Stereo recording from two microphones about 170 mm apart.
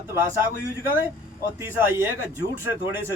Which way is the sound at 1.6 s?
15° right (ahead or behind).